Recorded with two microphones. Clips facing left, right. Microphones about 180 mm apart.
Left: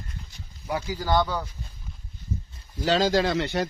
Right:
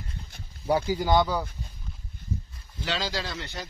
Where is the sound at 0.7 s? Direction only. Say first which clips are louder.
Right 5 dB; 30° right (ahead or behind).